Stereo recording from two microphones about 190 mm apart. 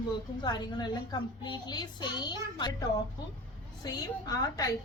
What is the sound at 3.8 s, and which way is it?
Speech, 20° left (ahead or behind).